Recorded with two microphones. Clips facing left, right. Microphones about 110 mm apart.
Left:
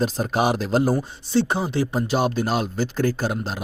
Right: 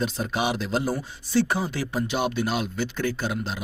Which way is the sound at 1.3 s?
25° left (ahead or behind).